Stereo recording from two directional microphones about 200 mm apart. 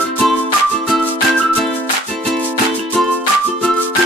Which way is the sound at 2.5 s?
10° right (ahead or behind).